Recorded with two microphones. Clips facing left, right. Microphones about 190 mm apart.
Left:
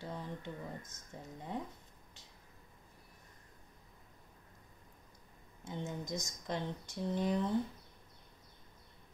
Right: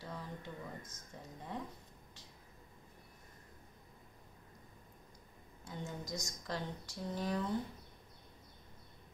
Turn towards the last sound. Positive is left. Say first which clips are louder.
# left 4 dB
turn(degrees=20)  # may be behind; listen again after turning